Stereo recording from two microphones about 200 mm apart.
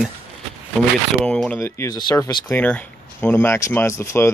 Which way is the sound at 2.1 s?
15° left (ahead or behind).